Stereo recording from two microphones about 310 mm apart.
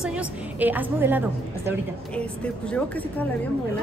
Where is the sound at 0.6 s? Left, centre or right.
Centre.